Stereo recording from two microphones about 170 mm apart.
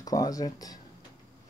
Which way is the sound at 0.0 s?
20° left (ahead or behind).